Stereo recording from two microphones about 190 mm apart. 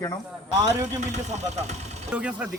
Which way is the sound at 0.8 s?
35° right (ahead or behind).